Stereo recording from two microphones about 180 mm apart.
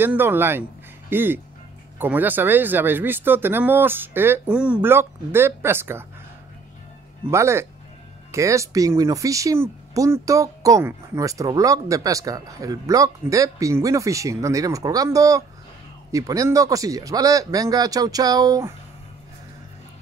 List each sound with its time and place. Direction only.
0.0 s speech: 10° right (ahead or behind)
7.2 s speech: 15° right (ahead or behind)